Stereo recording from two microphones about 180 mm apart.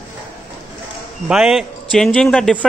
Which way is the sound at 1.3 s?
Centre (ahead or behind).